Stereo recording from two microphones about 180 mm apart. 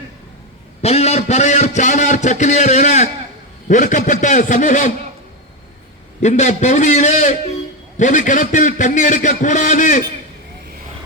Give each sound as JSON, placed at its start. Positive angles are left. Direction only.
{"t": 0.8, "sound": "a sound", "side_deg": 35}
{"t": 3.7, "sound": "a man's voice", "side_deg": 45}
{"t": 6.2, "sound": "a man's voice", "side_deg": 40}